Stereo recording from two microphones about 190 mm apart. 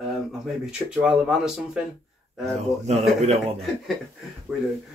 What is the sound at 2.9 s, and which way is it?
Speech, 35° right (ahead or behind).